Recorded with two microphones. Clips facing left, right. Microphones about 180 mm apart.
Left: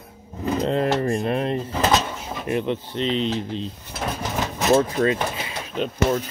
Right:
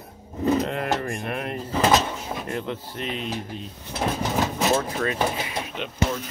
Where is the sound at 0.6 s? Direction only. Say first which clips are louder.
Left 5 dB; 30° left (ahead or behind).